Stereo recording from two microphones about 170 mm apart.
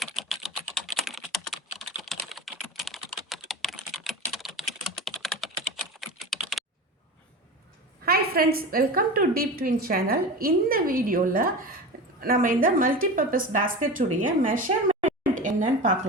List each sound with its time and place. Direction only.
0.0 s typing: centre (ahead or behind)
5.0 s computer keyboard: centre (ahead or behind)
8.0 s a woman's voice: 65° right (ahead or behind)